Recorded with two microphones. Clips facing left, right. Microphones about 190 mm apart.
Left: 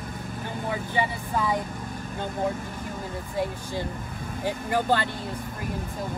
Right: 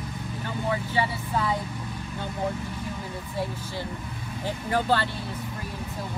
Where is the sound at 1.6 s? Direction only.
50° left (ahead or behind).